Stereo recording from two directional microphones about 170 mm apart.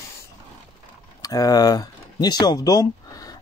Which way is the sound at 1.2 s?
20° left (ahead or behind).